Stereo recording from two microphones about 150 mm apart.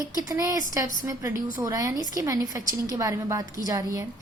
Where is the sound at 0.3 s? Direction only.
20° right (ahead or behind).